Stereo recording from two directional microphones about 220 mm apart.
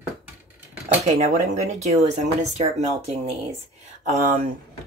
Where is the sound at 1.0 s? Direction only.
30° right (ahead or behind).